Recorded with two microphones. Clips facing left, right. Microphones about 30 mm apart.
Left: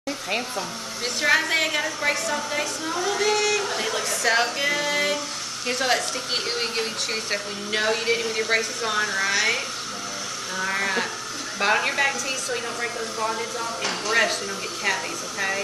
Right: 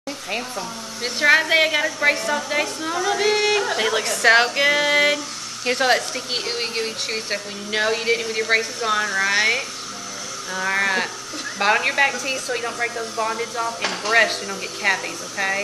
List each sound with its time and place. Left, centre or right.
1.0 s a woman's voice: centre; by 4.0 s right
4.2 s music: right
5.7 s a woman's voice: centre